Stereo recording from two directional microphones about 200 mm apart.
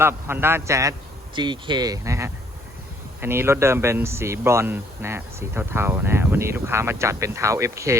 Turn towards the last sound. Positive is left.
turn(degrees=-15)  # may be behind; listen again after turning